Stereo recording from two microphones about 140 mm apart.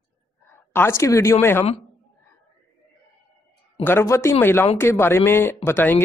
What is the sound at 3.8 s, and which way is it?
A woman's voice, 20° left (ahead or behind).